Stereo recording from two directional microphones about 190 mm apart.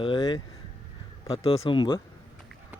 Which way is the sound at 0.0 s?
25° left (ahead or behind).